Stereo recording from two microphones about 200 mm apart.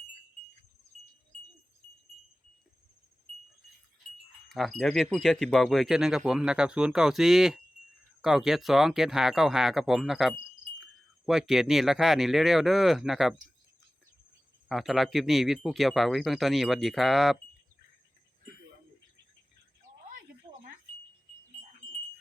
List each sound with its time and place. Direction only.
4.4 s speech: centre (ahead or behind)
14.7 s speech: centre (ahead or behind)